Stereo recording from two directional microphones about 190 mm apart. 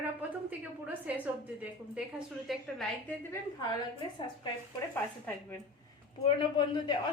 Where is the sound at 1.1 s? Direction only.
5° right (ahead or behind).